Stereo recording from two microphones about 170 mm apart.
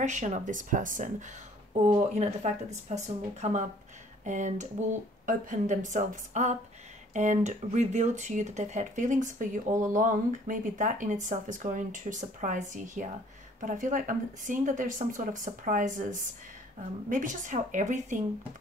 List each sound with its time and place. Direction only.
0.0 s speech: 45° right (ahead or behind)